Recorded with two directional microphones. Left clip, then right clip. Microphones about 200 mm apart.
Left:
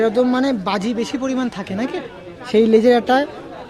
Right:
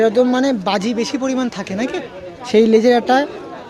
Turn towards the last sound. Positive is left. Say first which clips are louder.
# right 1 dB
turn(degrees=0)  # may be behind; listen again after turning